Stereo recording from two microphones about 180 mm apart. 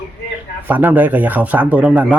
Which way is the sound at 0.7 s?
10° right (ahead or behind).